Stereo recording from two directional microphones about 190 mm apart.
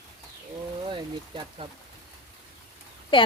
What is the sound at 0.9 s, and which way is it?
Speech, 25° right (ahead or behind).